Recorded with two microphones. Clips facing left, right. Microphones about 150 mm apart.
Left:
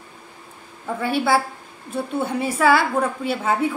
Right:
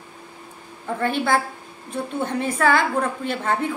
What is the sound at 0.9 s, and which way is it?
A woman's voice, 5° left (ahead or behind).